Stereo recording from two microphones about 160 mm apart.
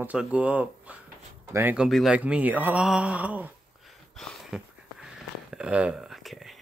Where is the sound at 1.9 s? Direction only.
Centre (ahead or behind).